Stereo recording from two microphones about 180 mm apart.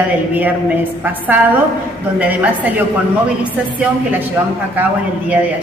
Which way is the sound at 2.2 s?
10° right (ahead or behind).